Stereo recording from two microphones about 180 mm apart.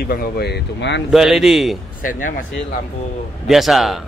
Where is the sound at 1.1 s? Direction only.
Centre (ahead or behind).